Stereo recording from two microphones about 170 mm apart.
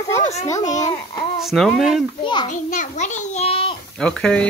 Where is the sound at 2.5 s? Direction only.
50° left (ahead or behind).